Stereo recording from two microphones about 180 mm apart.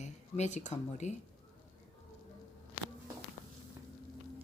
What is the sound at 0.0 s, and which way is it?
Speech, 40° left (ahead or behind).